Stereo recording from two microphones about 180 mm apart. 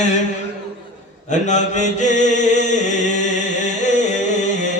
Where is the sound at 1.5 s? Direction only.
40° left (ahead or behind).